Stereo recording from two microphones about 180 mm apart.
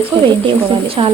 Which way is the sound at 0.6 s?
30° right (ahead or behind).